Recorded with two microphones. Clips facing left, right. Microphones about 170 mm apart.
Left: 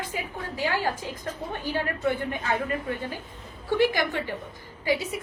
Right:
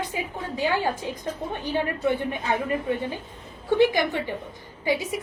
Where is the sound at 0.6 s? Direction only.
20° right (ahead or behind).